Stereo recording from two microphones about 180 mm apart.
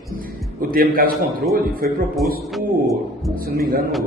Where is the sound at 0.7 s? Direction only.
55° right (ahead or behind).